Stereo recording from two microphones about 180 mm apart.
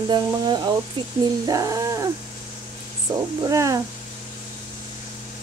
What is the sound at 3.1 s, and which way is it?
Speech, 25° right (ahead or behind).